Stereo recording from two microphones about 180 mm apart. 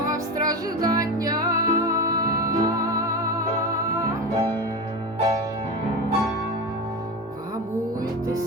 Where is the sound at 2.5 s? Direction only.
20° right (ahead or behind).